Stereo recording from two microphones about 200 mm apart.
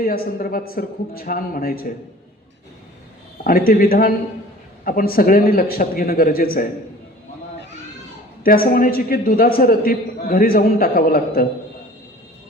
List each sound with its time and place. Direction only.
0.0 s a man's voice: 45° left (ahead or behind)
3.4 s a man's voice: 45° left (ahead or behind)
8.4 s a man's voice: 45° left (ahead or behind)